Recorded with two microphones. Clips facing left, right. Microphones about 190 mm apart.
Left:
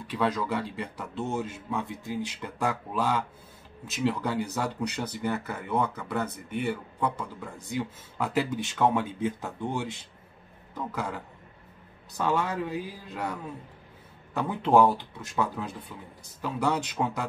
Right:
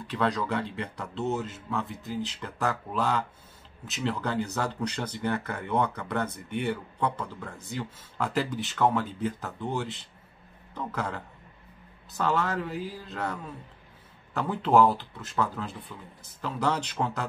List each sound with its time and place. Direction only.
0.0 s speech: 10° left (ahead or behind)